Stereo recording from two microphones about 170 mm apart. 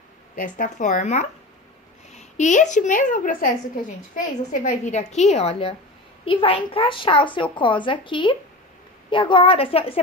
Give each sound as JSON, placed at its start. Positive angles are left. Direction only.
{"t": 0.4, "sound": "a woman's voice", "side_deg": 50}